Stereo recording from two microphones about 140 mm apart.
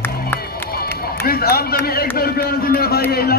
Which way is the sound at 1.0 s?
90° left.